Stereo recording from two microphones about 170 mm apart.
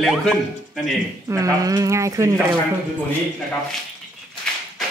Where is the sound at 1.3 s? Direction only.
20° right (ahead or behind).